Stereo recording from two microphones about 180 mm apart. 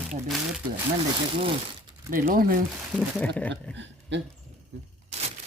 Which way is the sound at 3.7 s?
85° right.